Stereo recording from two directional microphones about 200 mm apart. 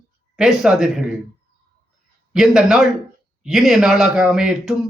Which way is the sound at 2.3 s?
5° right (ahead or behind).